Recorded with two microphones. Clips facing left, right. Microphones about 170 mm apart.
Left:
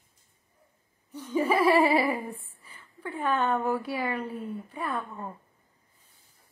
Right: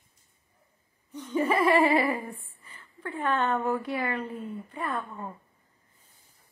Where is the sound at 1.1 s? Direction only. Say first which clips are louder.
Left 1 dB; 10° left (ahead or behind).